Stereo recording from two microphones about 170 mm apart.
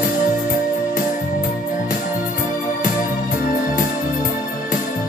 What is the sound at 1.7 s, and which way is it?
Music, 55° left (ahead or behind).